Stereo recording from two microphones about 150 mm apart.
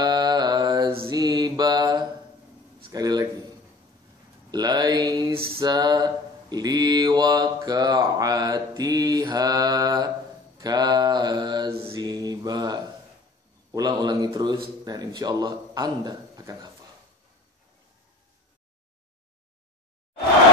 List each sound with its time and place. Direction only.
0.0 s mantra: 25° right (ahead or behind)
2.9 s a man's voice: 25° right (ahead or behind)
4.5 s mantra: 30° right (ahead or behind)
14.9 s a man's voice: 25° right (ahead or behind)